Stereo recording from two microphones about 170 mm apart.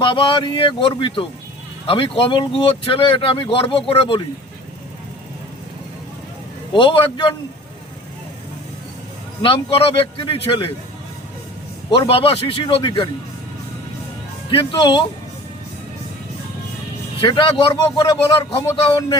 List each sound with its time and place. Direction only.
0.0 s a man's voice: 30° left (ahead or behind)
6.7 s speech: 30° left (ahead or behind)
9.4 s speech: 30° left (ahead or behind)
11.9 s speech: 35° left (ahead or behind)
14.5 s a man's voice: 30° left (ahead or behind)
17.2 s a man's voice: 30° left (ahead or behind)